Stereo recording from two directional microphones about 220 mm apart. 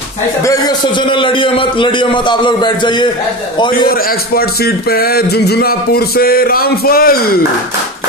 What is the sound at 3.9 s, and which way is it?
A man's voice, 40° left (ahead or behind).